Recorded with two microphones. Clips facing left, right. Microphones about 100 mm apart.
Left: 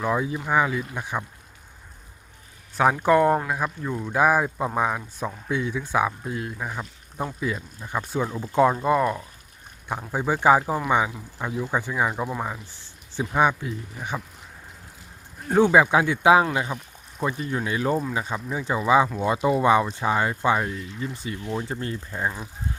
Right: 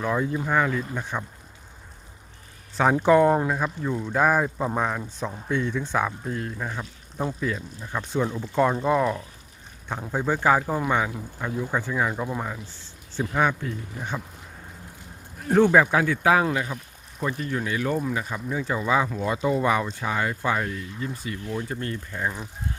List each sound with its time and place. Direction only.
0.0 s speech: 5° left (ahead or behind)
3.0 s speech: centre (ahead or behind)
15.5 s speech: 10° left (ahead or behind)